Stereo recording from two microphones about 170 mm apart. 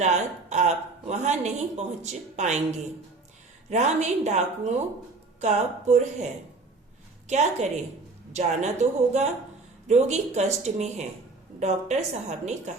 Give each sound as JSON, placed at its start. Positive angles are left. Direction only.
{"t": 0.0, "sound": "a woman's voice", "side_deg": -40}
{"t": 3.7, "sound": "a woman's voice", "side_deg": -40}